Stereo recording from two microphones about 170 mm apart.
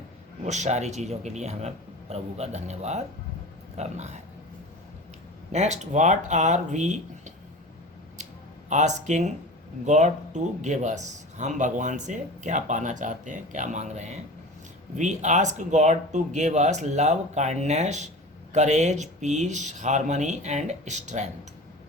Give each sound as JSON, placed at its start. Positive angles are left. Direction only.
{"t": 0.4, "sound": "a man's voice", "side_deg": -45}
{"t": 5.5, "sound": "speech", "side_deg": -40}
{"t": 8.7, "sound": "speech", "side_deg": -45}